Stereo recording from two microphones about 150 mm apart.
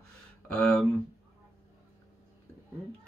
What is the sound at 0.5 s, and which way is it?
Speech, 10° left (ahead or behind).